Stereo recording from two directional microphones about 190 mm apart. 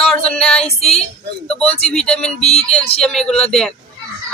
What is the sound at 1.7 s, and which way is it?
Speech, 5° left (ahead or behind).